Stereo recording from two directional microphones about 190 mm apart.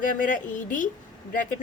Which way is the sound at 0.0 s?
45° left (ahead or behind).